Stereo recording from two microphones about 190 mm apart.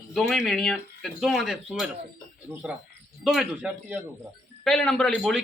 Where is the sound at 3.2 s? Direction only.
Centre (ahead or behind).